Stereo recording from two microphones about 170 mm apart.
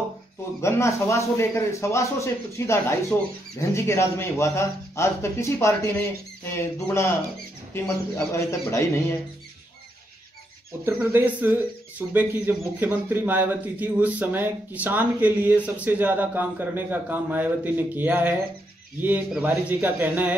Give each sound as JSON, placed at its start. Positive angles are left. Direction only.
{"t": 0.6, "sound": "a man's voice", "side_deg": 15}
{"t": 10.9, "sound": "speech", "side_deg": -10}